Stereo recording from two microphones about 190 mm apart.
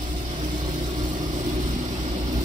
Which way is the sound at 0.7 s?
40° right (ahead or behind).